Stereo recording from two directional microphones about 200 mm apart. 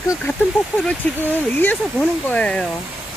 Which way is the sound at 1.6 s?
5° left (ahead or behind).